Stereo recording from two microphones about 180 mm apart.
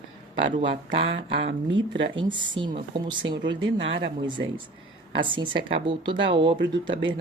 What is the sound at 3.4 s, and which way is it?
Speech, 85° right.